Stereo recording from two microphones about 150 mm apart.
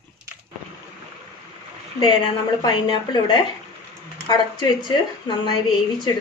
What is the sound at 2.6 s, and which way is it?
A woman's voice, 30° left (ahead or behind).